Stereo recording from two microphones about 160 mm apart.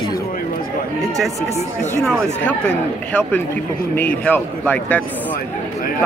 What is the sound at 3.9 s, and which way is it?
A man's voice, 10° left (ahead or behind).